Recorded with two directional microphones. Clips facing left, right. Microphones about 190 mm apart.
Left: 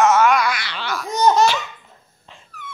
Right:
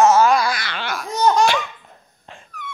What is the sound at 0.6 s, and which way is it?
Speech, 50° right (ahead or behind).